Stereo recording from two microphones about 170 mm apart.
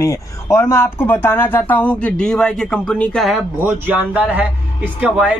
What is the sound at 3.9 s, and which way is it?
Speech, 10° right (ahead or behind).